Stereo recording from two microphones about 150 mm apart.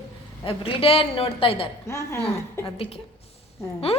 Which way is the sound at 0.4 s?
40° left (ahead or behind).